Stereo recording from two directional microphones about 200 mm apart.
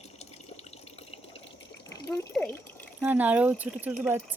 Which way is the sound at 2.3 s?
5° left (ahead or behind).